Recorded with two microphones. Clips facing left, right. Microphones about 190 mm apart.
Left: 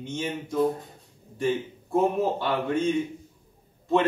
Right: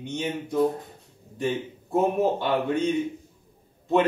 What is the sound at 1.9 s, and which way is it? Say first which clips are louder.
Speech: right 1 dB; 20° right (ahead or behind).